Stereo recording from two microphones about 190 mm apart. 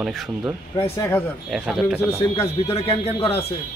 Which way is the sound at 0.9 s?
15° left (ahead or behind).